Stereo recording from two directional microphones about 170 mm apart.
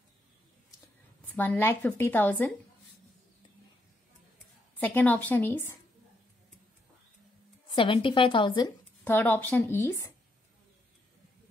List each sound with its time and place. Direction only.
1.3 s speech: 10° left (ahead or behind)
4.7 s speech: 10° left (ahead or behind)
7.7 s a woman's voice: 30° left (ahead or behind)
9.0 s speech: 10° left (ahead or behind)